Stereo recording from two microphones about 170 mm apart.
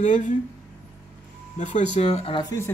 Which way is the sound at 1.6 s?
45° left (ahead or behind).